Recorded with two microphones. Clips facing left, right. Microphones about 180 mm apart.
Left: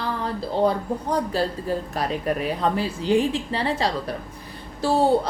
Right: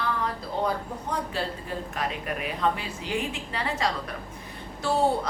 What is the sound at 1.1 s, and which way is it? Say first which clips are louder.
A woman's voice: left 6 dB; 40° left (ahead or behind).